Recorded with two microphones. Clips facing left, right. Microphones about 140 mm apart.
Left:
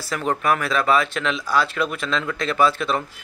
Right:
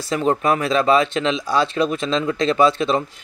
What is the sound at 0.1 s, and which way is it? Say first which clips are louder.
Speech: right 3 dB; 25° right (ahead or behind).